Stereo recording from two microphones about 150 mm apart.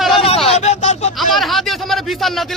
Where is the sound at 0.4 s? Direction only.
45° left (ahead or behind).